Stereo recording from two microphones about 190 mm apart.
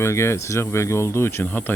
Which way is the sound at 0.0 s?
15° left (ahead or behind).